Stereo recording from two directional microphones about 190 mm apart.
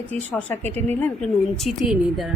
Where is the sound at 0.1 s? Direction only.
10° left (ahead or behind).